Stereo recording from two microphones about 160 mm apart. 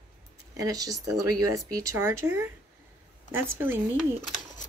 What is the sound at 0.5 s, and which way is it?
Speech, 20° right (ahead or behind).